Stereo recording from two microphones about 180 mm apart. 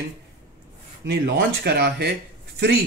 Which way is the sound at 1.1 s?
65° right (ahead or behind).